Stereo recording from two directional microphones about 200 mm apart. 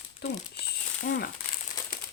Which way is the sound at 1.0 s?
50° left (ahead or behind).